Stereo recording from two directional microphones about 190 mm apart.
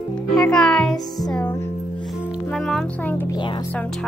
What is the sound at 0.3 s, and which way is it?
Music, 5° left (ahead or behind).